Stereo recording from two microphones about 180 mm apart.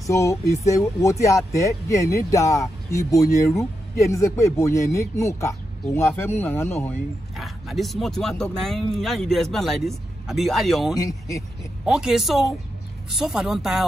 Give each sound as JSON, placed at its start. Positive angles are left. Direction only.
{"t": 0.0, "sound": "speech", "side_deg": 15}
{"t": 7.3, "sound": "speech", "side_deg": 0}
{"t": 11.0, "sound": "speech", "side_deg": 20}
{"t": 11.8, "sound": "speech", "side_deg": -5}